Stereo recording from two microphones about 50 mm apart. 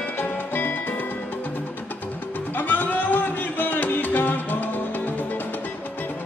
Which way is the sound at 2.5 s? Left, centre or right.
Left.